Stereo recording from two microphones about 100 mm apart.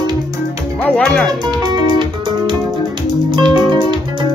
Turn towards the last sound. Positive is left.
turn(degrees=-50)  # may be behind; listen again after turning